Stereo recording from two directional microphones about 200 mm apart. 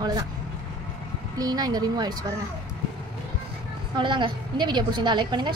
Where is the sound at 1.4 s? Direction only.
20° right (ahead or behind).